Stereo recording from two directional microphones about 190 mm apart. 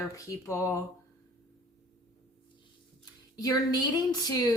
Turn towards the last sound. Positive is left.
turn(degrees=20)  # may be behind; listen again after turning